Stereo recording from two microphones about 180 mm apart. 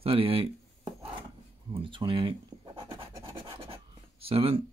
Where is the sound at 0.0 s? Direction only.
30° right (ahead or behind).